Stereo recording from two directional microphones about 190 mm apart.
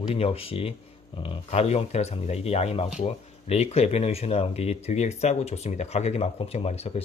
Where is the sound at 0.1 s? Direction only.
30° left (ahead or behind).